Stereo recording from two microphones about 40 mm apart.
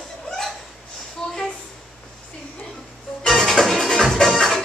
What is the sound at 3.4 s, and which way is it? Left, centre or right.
Music, centre.